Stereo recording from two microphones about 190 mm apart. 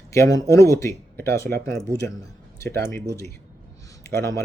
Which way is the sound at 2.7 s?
15° left (ahead or behind).